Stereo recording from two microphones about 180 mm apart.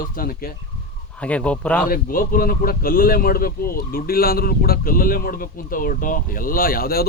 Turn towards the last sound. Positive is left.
turn(degrees=55)  # may be behind; listen again after turning